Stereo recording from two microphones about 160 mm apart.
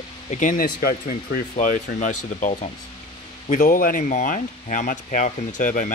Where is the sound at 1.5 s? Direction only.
55° left (ahead or behind).